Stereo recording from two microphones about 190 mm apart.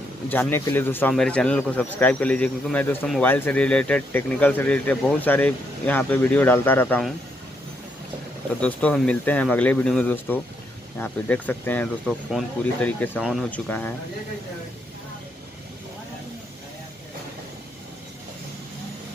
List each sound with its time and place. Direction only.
0.3 s speech: 10° left (ahead or behind)
8.5 s speech: 5° left (ahead or behind)